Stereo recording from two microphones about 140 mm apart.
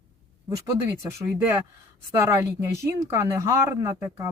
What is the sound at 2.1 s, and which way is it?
Speech, 20° right (ahead or behind).